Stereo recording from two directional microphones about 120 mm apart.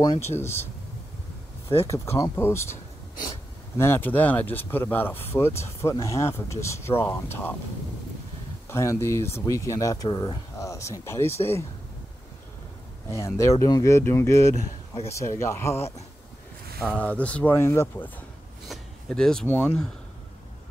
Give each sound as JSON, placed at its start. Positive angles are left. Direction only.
{"t": 0.4, "sound": "speech", "side_deg": 20}
{"t": 1.7, "sound": "speech", "side_deg": 20}
{"t": 8.6, "sound": "speech", "side_deg": 25}
{"t": 10.0, "sound": "speech", "side_deg": 35}
{"t": 13.1, "sound": "speech", "side_deg": 25}
{"t": 18.7, "sound": "a sound", "side_deg": 5}
{"t": 19.4, "sound": "speech", "side_deg": 10}